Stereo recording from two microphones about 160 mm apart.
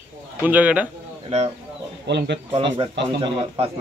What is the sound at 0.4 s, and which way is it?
Speech, 10° right (ahead or behind).